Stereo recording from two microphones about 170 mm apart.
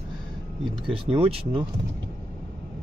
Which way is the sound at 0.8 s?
30° right (ahead or behind).